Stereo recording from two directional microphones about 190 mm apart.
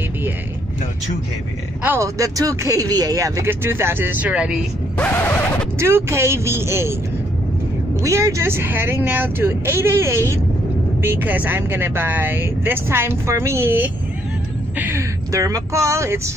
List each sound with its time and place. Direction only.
1.8 s speech: 15° right (ahead or behind)
4.9 s a sound: 10° left (ahead or behind)
5.8 s speech: 15° right (ahead or behind)
8.0 s speech: 15° right (ahead or behind)